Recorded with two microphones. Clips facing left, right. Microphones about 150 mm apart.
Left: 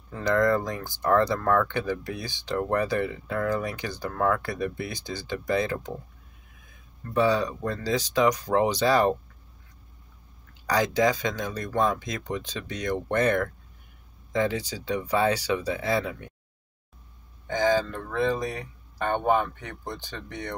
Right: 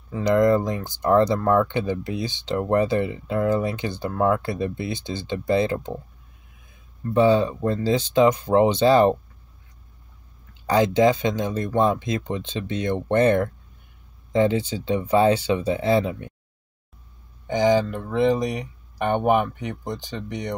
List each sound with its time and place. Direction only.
0.1 s speech: 20° right (ahead or behind)
7.2 s speech: 25° right (ahead or behind)
10.7 s speech: 25° right (ahead or behind)
17.5 s speech: 20° right (ahead or behind)